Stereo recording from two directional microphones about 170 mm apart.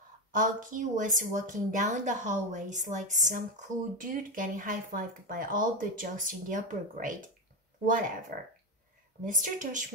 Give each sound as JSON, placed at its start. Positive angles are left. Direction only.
{"t": 0.3, "sound": "a woman's voice", "side_deg": -50}
{"t": 9.2, "sound": "a woman's voice", "side_deg": -50}